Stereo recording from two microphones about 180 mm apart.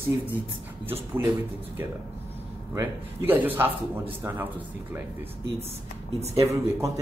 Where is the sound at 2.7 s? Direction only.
10° right (ahead or behind).